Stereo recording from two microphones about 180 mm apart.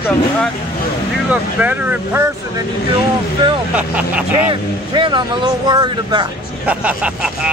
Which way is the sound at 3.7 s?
10° right (ahead or behind).